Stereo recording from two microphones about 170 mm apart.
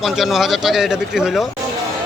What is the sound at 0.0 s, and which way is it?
Speech, centre (ahead or behind).